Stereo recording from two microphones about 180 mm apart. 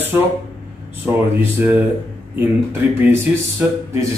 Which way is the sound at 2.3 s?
10° right (ahead or behind).